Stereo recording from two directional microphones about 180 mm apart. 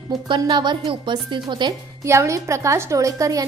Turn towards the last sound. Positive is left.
turn(degrees=-20)  # may be behind; listen again after turning